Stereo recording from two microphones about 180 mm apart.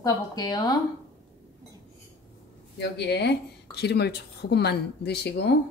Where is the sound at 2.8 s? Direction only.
70° left (ahead or behind).